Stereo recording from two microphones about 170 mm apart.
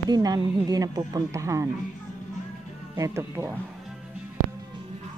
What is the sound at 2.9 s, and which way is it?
Speech, 15° right (ahead or behind).